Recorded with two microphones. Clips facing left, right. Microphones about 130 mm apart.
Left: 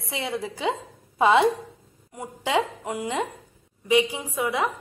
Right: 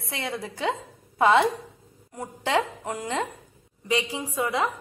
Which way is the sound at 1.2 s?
15° left (ahead or behind).